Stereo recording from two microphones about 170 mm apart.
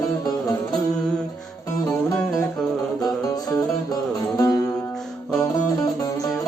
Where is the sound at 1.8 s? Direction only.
20° left (ahead or behind).